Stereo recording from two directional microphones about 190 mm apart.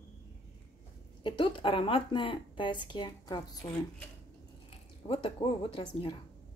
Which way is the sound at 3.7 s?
5° left (ahead or behind).